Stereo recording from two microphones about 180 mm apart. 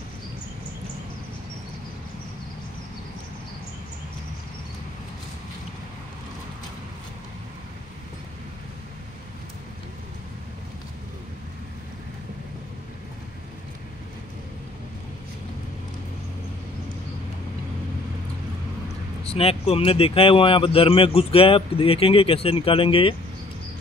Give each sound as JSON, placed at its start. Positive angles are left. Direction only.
{"t": 19.2, "sound": "speech", "side_deg": 35}